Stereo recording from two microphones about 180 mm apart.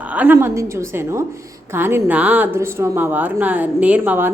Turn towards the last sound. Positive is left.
turn(degrees=-10)  # may be behind; listen again after turning